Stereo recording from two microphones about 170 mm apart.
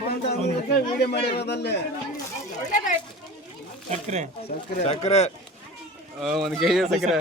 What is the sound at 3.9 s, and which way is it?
Speech, 45° right (ahead or behind).